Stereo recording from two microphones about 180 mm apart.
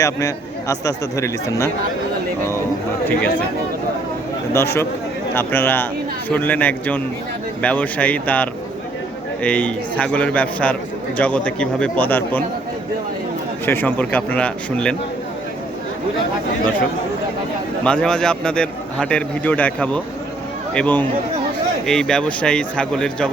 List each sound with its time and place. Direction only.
0.0 s speech: 15° left (ahead or behind)
4.5 s speech: 15° left (ahead or behind)
13.7 s speech: 10° left (ahead or behind)
17.8 s a man's voice: 5° left (ahead or behind)